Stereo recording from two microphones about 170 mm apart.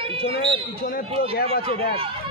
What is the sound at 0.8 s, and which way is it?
Speech, 60° left (ahead or behind).